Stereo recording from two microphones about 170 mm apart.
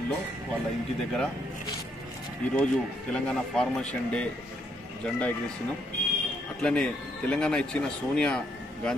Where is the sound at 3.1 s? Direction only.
5° left (ahead or behind).